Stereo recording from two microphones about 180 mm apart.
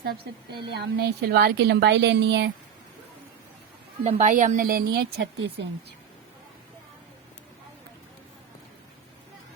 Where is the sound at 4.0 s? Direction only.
45° right (ahead or behind); by 5.7 s 85° right.